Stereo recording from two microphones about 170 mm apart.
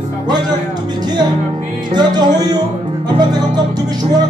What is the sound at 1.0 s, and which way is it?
Speech, 25° right (ahead or behind).